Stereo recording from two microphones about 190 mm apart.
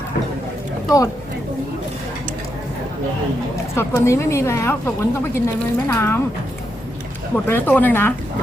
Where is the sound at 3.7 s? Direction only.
15° left (ahead or behind).